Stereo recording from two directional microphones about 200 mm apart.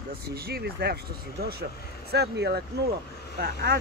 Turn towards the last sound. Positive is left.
turn(degrees=-50)  # may be behind; listen again after turning